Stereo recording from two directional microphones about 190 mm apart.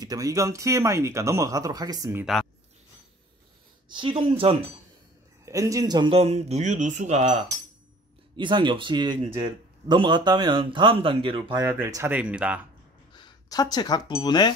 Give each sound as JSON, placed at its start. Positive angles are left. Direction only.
{"t": 0.0, "sound": "speech", "side_deg": -20}
{"t": 3.9, "sound": "speech", "side_deg": -25}
{"t": 5.4, "sound": "speech", "side_deg": -15}
{"t": 8.4, "sound": "speech", "side_deg": -25}
{"t": 11.6, "sound": "speech", "side_deg": -15}
{"t": 13.1, "sound": "speech", "side_deg": 20}